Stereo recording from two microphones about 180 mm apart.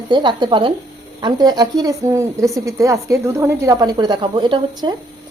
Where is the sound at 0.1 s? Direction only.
25° right (ahead or behind).